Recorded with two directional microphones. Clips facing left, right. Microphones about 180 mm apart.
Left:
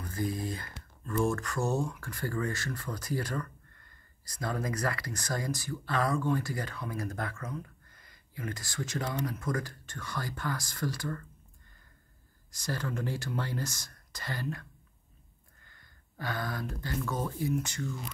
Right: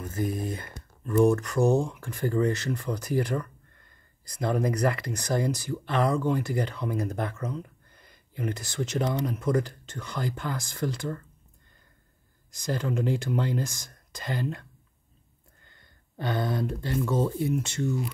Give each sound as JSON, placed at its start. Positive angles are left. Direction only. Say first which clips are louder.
{"t": 0.0, "sound": "speech", "louder": "right 4 dB", "side_deg": -20}
{"t": 12.4, "sound": "speech", "louder": "right 6 dB", "side_deg": -15}